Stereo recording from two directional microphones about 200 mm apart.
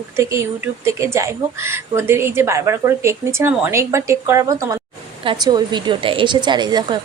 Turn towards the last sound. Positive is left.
turn(degrees=-20)  # may be behind; listen again after turning